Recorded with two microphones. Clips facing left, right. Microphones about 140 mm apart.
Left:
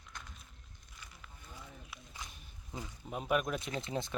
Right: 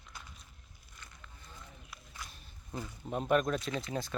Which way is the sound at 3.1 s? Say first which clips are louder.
Right 4 dB; 5° left (ahead or behind).